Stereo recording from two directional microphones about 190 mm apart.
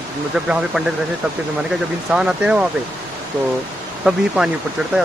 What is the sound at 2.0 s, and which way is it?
Speech, 5° right (ahead or behind).